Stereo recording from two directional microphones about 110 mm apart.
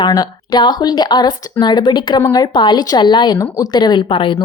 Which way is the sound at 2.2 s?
35° left (ahead or behind).